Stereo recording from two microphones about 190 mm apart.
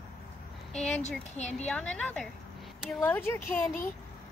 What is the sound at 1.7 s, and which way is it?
A child's voice, 5° left (ahead or behind).